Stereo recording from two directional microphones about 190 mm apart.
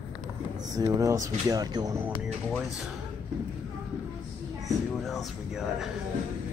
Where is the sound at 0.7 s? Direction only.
15° right (ahead or behind).